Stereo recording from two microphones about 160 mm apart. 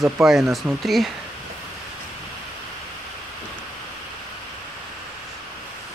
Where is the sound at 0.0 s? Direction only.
Centre (ahead or behind).